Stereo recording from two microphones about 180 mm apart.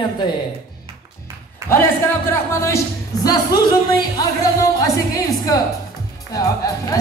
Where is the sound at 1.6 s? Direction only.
15° right (ahead or behind).